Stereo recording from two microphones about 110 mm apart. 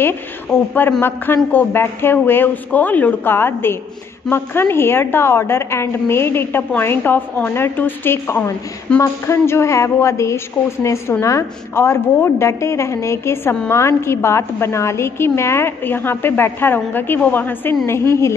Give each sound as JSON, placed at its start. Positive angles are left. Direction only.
{"t": 1.0, "sound": "a woman's voice", "side_deg": 20}